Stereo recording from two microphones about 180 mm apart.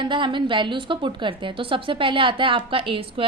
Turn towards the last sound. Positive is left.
turn(degrees=-30)  # may be behind; listen again after turning